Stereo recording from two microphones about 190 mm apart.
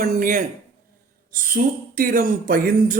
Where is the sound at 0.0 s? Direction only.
45° right (ahead or behind).